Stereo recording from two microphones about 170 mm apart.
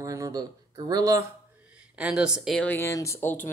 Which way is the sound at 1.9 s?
5° right (ahead or behind).